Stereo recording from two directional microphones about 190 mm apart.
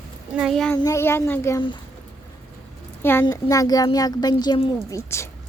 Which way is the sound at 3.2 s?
20° left (ahead or behind).